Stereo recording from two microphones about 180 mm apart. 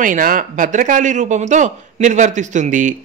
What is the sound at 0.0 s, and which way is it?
Speech, 50° right (ahead or behind).